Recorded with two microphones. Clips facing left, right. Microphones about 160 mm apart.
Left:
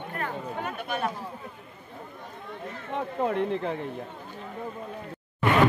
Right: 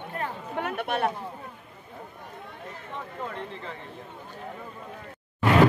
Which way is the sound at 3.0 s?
60° left (ahead or behind).